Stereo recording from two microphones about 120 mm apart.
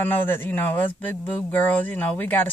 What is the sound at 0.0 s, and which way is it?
Speech, 15° left (ahead or behind).